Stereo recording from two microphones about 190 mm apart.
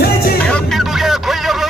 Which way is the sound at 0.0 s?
55° left (ahead or behind).